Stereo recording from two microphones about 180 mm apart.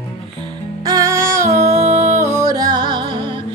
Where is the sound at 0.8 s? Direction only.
20° right (ahead or behind).